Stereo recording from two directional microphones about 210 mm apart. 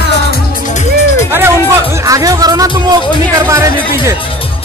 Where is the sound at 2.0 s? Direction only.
15° right (ahead or behind).